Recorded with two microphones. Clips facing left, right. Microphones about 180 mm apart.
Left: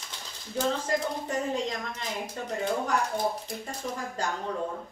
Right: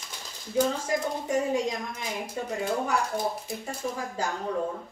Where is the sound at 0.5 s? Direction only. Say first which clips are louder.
Right 2 dB; 10° right (ahead or behind).